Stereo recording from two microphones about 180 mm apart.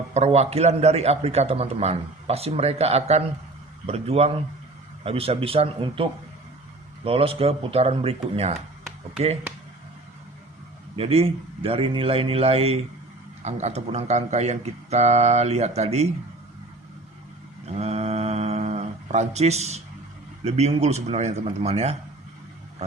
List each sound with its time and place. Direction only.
0.1 s a man's voice: 35° right (ahead or behind)
10.9 s a man's voice: 35° right (ahead or behind)
17.7 s a sound: 35° right (ahead or behind)
20.4 s a man's voice: 35° right (ahead or behind)